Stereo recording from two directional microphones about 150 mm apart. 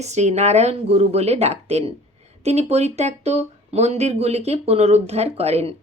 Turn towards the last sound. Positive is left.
turn(degrees=-45)  # may be behind; listen again after turning